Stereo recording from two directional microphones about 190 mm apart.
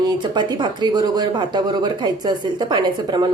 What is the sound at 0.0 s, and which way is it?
Speech, 20° right (ahead or behind).